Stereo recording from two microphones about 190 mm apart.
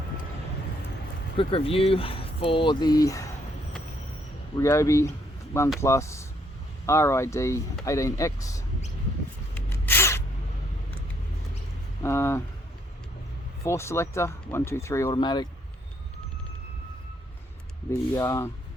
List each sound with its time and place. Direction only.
1.4 s speech: 30° left (ahead or behind)
4.5 s speech: 15° left (ahead or behind)
9.6 s a sound: 10° left (ahead or behind)
12.0 s a sound: 15° left (ahead or behind)
13.7 s speech: 15° left (ahead or behind)
18.1 s speech: 15° left (ahead or behind)